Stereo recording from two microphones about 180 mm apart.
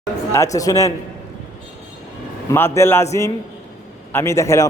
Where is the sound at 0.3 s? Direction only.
20° left (ahead or behind).